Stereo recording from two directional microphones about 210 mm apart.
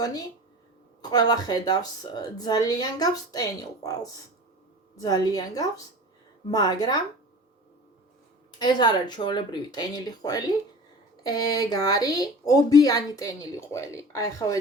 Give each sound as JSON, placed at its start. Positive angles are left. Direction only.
{"t": 0.0, "sound": "a woman's voice", "side_deg": 15}
{"t": 8.5, "sound": "a woman's voice", "side_deg": 20}